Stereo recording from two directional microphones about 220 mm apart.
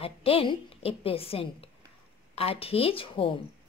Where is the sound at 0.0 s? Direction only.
25° left (ahead or behind).